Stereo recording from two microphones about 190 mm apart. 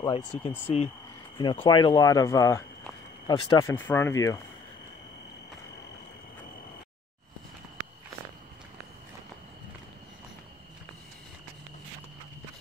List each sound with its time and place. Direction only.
0.0 s speech: 25° left (ahead or behind)